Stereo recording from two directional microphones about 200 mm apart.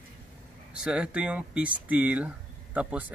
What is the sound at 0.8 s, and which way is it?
Speech, 5° right (ahead or behind).